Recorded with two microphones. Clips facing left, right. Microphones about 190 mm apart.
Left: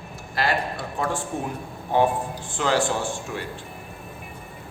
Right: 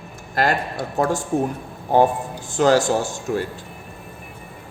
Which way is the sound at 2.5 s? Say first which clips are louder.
Right 7 dB; 40° right (ahead or behind).